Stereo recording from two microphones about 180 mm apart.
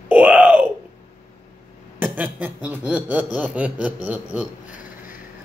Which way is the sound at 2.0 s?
10° right (ahead or behind).